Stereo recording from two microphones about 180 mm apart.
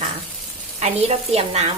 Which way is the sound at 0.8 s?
35° right (ahead or behind).